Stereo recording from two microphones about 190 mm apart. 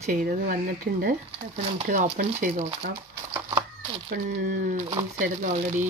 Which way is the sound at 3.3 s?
20° right (ahead or behind).